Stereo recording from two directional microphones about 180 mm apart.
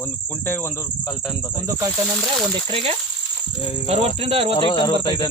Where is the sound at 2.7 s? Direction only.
30° right (ahead or behind).